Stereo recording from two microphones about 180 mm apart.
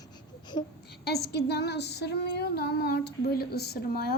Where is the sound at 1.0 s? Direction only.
65° left (ahead or behind).